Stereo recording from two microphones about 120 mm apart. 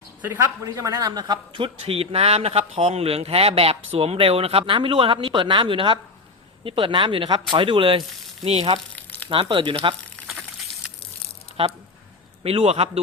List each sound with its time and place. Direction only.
0.6 s speech: 30° right (ahead or behind)
1.5 s speech: 50° right (ahead or behind)
9.3 s speech: 45° right (ahead or behind)
11.6 s a man's voice: 45° right (ahead or behind); by 13.0 s 65° right (ahead or behind)